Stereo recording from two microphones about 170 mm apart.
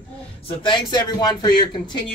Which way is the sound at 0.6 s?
25° left (ahead or behind).